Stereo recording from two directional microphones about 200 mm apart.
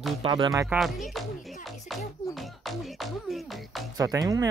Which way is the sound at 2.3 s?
Centre (ahead or behind).